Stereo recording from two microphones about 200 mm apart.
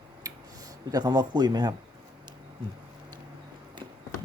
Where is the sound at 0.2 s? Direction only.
15° right (ahead or behind).